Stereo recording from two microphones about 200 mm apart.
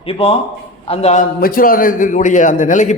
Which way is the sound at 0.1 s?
30° left (ahead or behind).